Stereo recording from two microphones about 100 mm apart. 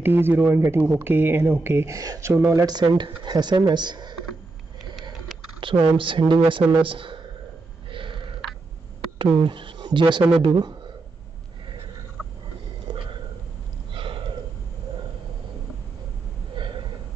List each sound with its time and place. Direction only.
0.0 s speech: 20° right (ahead or behind)
2.0 s speech: 35° right (ahead or behind)
2.6 s speech: 45° right (ahead or behind)
5.6 s speech: 55° right (ahead or behind)
7.9 s burping: 60° right (ahead or behind)
9.4 s speech: 55° right (ahead or behind)
12.9 s a sound: 55° right (ahead or behind)
16.6 s a sound: 55° right (ahead or behind)